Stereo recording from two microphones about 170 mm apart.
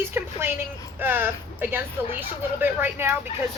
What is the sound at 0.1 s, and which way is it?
Speech, 15° right (ahead or behind).